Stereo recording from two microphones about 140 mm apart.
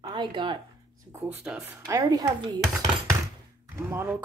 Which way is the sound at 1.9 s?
25° right (ahead or behind).